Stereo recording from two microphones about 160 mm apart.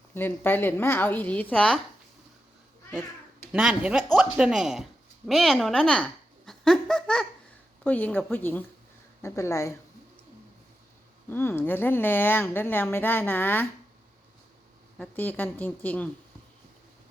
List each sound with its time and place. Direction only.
0.1 s a woman's voice: 15° left (ahead or behind)
3.5 s a woman's voice: 5° right (ahead or behind); by 9.7 s 20° left (ahead or behind)
11.3 s a woman's voice: 15° left (ahead or behind)
14.9 s a woman's voice: 10° left (ahead or behind)